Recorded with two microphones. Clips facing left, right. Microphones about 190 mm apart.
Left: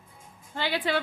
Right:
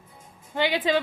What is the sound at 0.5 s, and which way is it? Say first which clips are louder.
Speech: right 5 dB; 15° right (ahead or behind).